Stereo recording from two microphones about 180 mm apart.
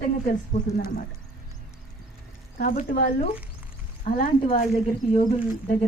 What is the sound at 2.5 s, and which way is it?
Speech, 50° left (ahead or behind).